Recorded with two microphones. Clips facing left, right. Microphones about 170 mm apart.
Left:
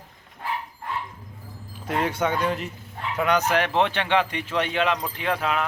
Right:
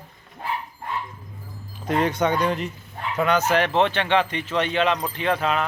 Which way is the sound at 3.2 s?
15° left (ahead or behind).